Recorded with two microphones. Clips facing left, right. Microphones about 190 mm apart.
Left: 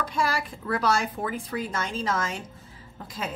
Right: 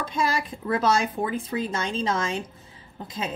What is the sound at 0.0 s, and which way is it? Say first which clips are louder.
A woman's voice: right 1 dB; 20° right (ahead or behind).